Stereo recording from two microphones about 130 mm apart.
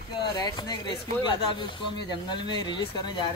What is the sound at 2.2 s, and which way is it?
Speech, 35° left (ahead or behind).